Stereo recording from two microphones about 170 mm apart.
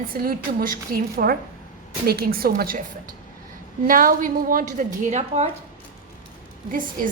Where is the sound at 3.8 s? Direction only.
55° right (ahead or behind).